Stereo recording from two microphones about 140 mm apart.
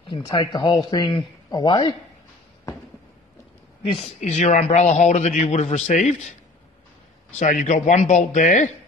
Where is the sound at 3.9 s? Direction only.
50° left (ahead or behind).